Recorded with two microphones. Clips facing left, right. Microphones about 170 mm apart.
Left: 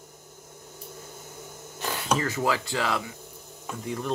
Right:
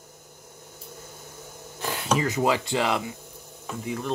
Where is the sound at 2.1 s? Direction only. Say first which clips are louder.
Right 3 dB; 15° right (ahead or behind).